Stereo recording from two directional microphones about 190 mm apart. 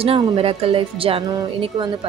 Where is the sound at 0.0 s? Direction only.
30° right (ahead or behind).